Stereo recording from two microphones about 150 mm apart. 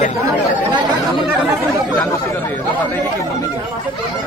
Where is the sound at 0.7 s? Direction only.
30° right (ahead or behind).